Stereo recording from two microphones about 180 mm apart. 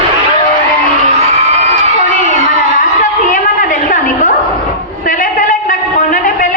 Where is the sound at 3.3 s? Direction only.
45° left (ahead or behind).